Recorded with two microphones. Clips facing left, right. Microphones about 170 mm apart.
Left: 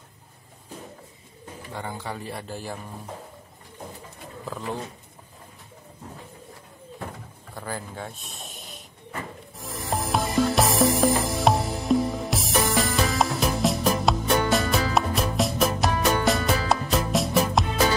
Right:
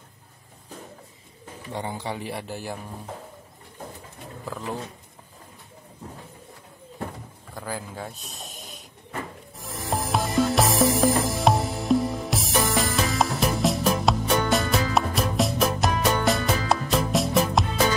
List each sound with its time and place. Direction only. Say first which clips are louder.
1.7 s speech: right 3 dB; 20° right (ahead or behind)
7.6 s speech: even; 5° right (ahead or behind)
8.5 s a sound: even; 40° right (ahead or behind)
9.6 s music: even; centre (ahead or behind)